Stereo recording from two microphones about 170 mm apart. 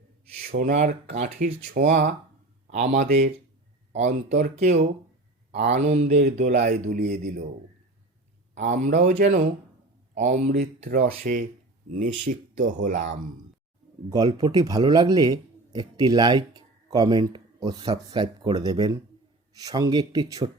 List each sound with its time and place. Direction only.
0.4 s speech: 60° right (ahead or behind)
1.1 s speech: 45° right (ahead or behind)
5.6 s speech: 40° right (ahead or behind); by 7.4 s 55° right (ahead or behind)
8.5 s speech: 45° right (ahead or behind)
14.1 s speech: 25° right (ahead or behind)